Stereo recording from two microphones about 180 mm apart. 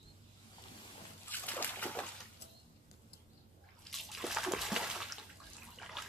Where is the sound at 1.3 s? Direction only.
10° left (ahead or behind).